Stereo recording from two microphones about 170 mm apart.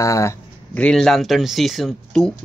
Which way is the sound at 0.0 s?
20° left (ahead or behind).